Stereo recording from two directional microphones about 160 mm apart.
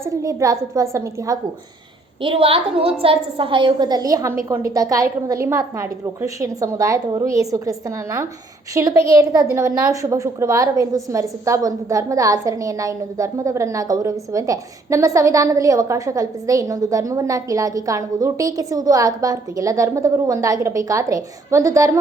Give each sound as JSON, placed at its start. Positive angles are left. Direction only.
{"t": 0.0, "sound": "a woman's voice", "side_deg": -20}
{"t": 2.2, "sound": "a woman's voice", "side_deg": -35}